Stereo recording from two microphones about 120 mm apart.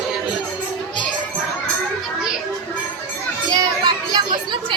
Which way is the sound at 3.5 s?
35° right (ahead or behind).